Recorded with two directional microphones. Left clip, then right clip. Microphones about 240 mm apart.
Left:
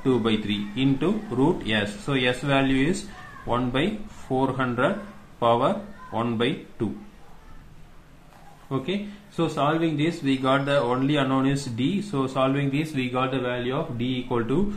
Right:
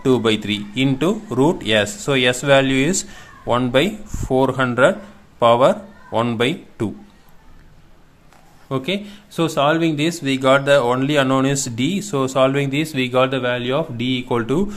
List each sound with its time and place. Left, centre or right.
0.0 s speech: right
8.6 s speech: right